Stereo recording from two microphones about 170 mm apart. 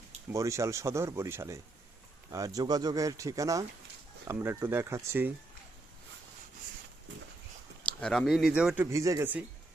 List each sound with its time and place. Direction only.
0.3 s speech: 20° right (ahead or behind)
7.9 s speech: 5° left (ahead or behind); by 9.4 s 15° right (ahead or behind)